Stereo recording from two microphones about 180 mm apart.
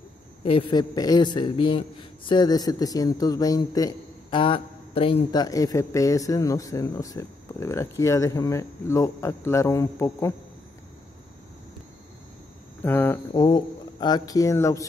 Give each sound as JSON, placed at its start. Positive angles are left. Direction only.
{"t": 0.4, "sound": "a man's voice", "side_deg": 30}
{"t": 12.8, "sound": "speech", "side_deg": 10}
{"t": 13.3, "sound": "a man's voice", "side_deg": 25}